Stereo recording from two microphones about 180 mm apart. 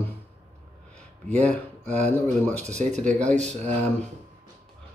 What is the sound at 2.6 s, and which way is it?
Speech, 40° right (ahead or behind).